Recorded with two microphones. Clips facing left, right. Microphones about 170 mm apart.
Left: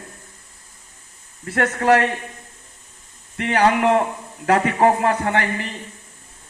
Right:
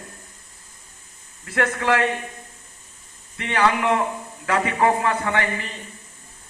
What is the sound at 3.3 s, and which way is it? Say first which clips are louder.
A man's voice: left 4 dB; 45° left (ahead or behind).